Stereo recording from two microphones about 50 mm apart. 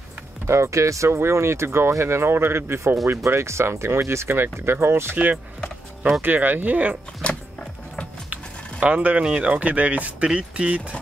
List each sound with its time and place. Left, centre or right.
0.5 s speech: right
1.1 s speech: right
5.1 s speech: right
7.2 s music: left
8.3 s music: right
9.2 s speech: right